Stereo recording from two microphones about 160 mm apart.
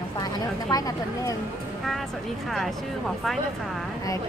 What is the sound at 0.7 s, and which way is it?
Speech, 25° left (ahead or behind).